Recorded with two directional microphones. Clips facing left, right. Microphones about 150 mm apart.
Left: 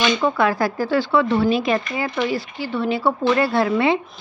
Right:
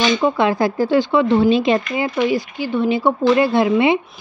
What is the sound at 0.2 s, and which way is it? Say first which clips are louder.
Speech: right 3 dB; 20° right (ahead or behind).